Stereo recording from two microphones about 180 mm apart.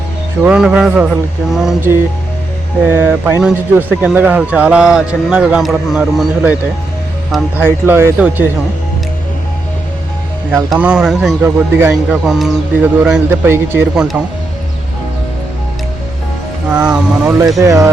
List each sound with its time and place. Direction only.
0.4 s a man's voice: 5° right (ahead or behind)
7.6 s a man's voice: 10° right (ahead or behind)
10.7 s speech: 5° right (ahead or behind)
16.6 s speech: 5° right (ahead or behind)
17.6 s a man's voice: 15° right (ahead or behind)